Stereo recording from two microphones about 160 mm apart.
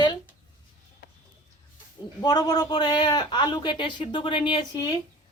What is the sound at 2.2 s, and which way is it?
A man's voice, 25° left (ahead or behind).